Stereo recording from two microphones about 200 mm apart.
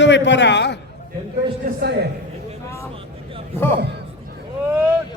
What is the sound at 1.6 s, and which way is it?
Speech, 45° right (ahead or behind).